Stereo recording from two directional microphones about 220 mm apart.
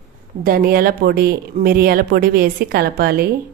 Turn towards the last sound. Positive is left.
turn(degrees=-45)  # may be behind; listen again after turning